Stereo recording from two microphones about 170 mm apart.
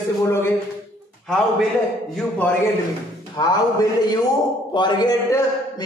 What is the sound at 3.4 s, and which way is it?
Speech, 25° left (ahead or behind).